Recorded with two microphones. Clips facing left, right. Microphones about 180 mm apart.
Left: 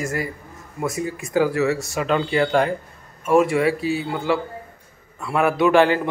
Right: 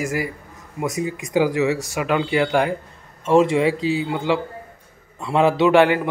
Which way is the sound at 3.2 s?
20° right (ahead or behind).